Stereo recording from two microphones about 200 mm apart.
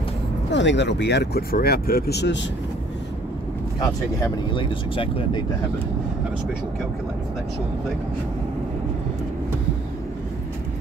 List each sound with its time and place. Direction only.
0.5 s speech: 65° left (ahead or behind)
3.8 s speech: 20° left (ahead or behind)